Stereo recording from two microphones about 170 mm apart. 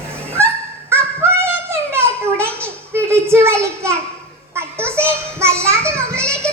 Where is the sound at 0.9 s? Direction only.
15° right (ahead or behind).